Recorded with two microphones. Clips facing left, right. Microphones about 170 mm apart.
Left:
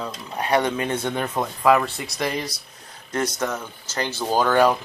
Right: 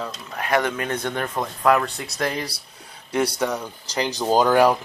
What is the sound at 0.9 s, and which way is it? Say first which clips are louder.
Speech: left 1 dB; 10° left (ahead or behind).